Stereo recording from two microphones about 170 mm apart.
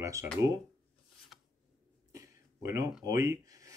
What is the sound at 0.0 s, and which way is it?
Speech, 20° right (ahead or behind).